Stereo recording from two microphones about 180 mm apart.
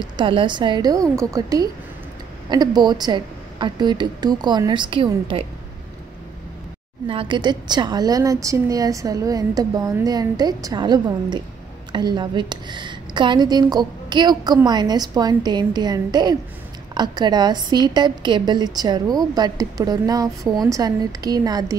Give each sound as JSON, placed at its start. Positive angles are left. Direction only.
{"t": 0.0, "sound": "a woman's voice", "side_deg": -25}
{"t": 7.1, "sound": "a woman's voice", "side_deg": -30}